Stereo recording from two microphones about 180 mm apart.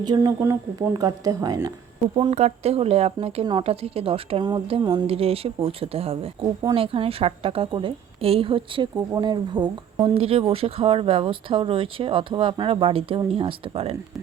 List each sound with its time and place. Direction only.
0.0 s speech: 20° right (ahead or behind)
2.1 s speech: 35° right (ahead or behind)